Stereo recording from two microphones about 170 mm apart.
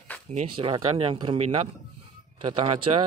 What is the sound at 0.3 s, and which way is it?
Speech, 40° right (ahead or behind).